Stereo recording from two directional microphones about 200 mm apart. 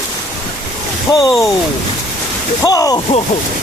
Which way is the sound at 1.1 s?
20° left (ahead or behind).